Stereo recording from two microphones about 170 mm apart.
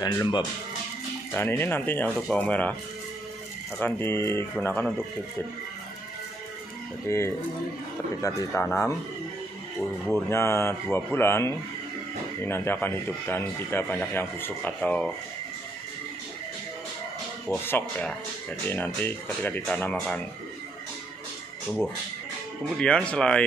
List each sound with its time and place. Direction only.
0.0 s speech: 25° left (ahead or behind)
1.3 s a man's voice: 10° left (ahead or behind)
3.8 s a man's voice: 15° left (ahead or behind)
7.1 s a man's voice: 15° left (ahead or behind)
10.0 s a man's voice: 10° left (ahead or behind)
17.5 s a man's voice: 10° left (ahead or behind)
22.8 s speech: 5° left (ahead or behind)